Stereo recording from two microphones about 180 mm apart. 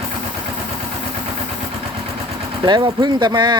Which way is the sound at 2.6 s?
25° right (ahead or behind).